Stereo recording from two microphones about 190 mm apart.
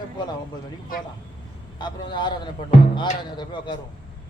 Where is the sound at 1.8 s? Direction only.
25° left (ahead or behind).